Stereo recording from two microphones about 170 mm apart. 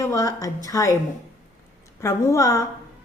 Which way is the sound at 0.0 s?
20° left (ahead or behind).